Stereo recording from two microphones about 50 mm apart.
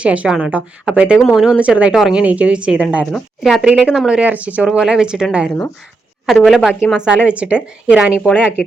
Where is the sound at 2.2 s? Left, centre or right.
Right.